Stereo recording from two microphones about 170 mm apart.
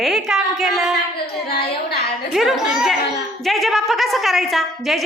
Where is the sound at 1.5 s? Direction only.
65° left (ahead or behind).